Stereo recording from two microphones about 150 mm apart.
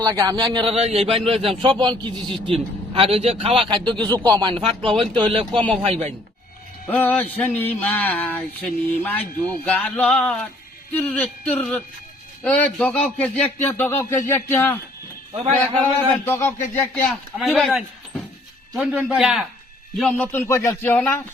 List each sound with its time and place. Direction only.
0.0 s speech: 25° right (ahead or behind)
6.8 s speech: 10° left (ahead or behind)
16.2 s speech: 15° left (ahead or behind)
17.1 s a man's voice: centre (ahead or behind)
20.0 s speech: 10° left (ahead or behind)